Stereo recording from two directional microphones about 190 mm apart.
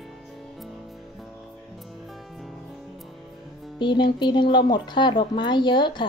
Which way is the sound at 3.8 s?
25° left (ahead or behind).